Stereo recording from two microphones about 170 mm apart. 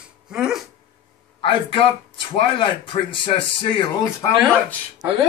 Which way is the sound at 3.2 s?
30° left (ahead or behind).